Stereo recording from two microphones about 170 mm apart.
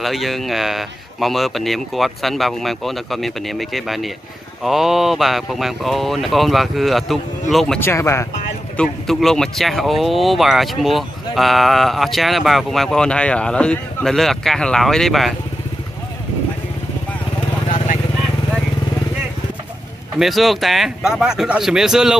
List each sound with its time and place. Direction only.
0.0 s speech: centre (ahead or behind)
7.8 s speech: 15° left (ahead or behind)
8.7 s speech: centre (ahead or behind)
20.2 s speech: centre (ahead or behind)